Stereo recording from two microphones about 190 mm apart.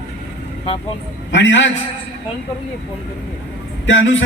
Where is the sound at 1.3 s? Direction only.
70° left (ahead or behind).